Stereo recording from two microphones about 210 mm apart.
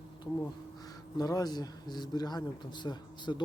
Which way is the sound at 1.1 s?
15° left (ahead or behind).